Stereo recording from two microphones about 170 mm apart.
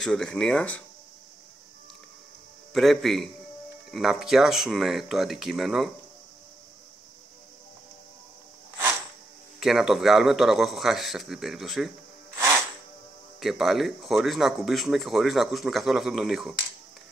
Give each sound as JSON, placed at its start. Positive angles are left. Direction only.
{"t": 0.0, "sound": "speech", "side_deg": 5}
{"t": 2.7, "sound": "speech", "side_deg": 0}
{"t": 9.6, "sound": "speech", "side_deg": 0}
{"t": 12.4, "sound": "music", "side_deg": -15}
{"t": 13.4, "sound": "speech", "side_deg": 0}